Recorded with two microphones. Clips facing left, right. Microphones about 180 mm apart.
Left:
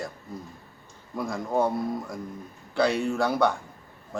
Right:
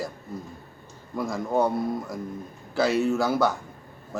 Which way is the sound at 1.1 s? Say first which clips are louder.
Right 2 dB; centre (ahead or behind).